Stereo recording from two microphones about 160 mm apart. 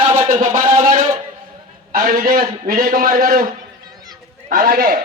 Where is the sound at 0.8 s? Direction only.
55° right (ahead or behind).